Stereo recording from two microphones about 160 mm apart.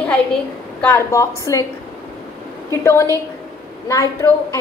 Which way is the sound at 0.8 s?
20° left (ahead or behind).